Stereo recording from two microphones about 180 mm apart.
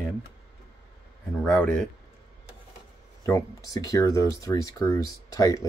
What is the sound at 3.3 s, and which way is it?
Speech, 20° left (ahead or behind).